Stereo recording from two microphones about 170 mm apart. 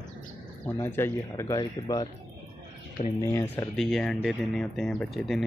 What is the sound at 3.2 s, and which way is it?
A man's voice, 10° left (ahead or behind).